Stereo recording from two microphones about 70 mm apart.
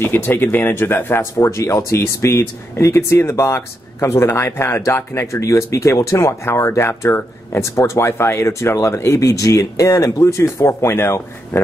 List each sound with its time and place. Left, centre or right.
0.0 s speech: left